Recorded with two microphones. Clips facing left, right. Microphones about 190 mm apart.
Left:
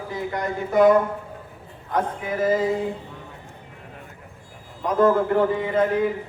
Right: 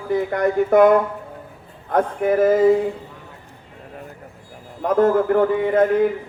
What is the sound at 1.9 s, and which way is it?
Speech, 55° right (ahead or behind).